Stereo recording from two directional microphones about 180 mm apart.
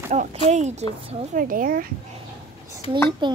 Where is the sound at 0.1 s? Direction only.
40° right (ahead or behind).